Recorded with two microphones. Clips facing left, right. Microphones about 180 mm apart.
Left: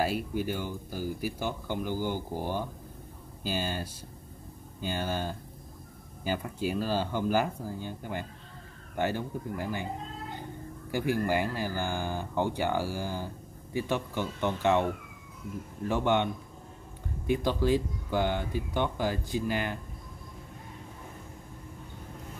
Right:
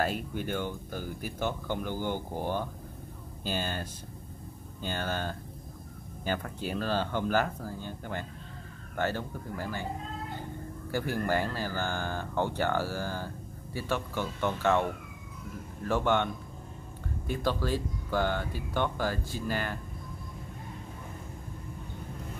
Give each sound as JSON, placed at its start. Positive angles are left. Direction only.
{"t": 0.0, "sound": "speech", "side_deg": 5}
{"t": 10.9, "sound": "speech", "side_deg": 15}
{"t": 17.3, "sound": "speech", "side_deg": 15}